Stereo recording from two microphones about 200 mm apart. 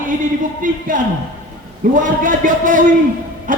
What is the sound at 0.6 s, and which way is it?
Speech, 40° right (ahead or behind).